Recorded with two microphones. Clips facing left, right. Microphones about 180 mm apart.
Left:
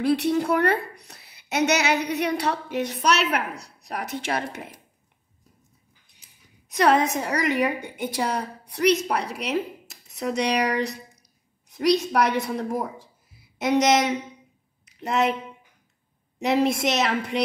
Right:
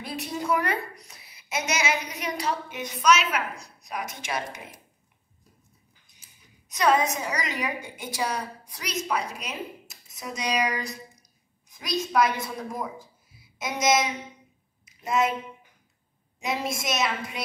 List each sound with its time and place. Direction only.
0.0 s a woman's voice: 70° left (ahead or behind)
6.7 s a woman's voice: 60° left (ahead or behind)
14.9 s a sound: 70° left (ahead or behind)
16.3 s a woman's voice: 65° left (ahead or behind)